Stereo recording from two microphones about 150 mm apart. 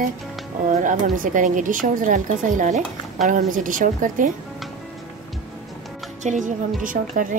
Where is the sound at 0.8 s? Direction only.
65° right (ahead or behind).